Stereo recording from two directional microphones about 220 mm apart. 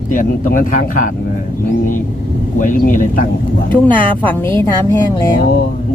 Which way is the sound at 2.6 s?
35° left (ahead or behind).